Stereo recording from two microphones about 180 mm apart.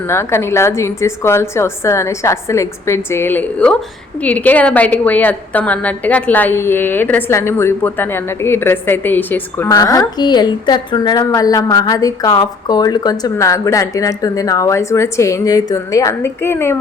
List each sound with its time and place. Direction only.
0.1 s a woman's voice: 15° left (ahead or behind)